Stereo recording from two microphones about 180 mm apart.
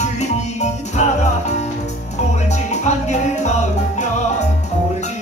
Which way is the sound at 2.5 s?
40° left (ahead or behind).